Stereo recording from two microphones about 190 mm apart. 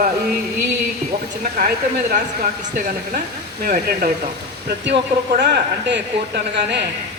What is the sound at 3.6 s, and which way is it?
Speech, 50° right (ahead or behind).